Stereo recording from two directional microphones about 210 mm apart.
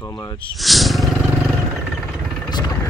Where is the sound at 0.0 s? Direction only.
15° left (ahead or behind).